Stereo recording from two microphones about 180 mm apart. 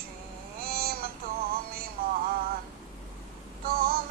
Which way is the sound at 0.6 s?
55° right (ahead or behind).